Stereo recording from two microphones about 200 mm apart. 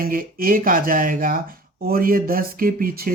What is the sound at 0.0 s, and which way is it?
Speech, 45° right (ahead or behind).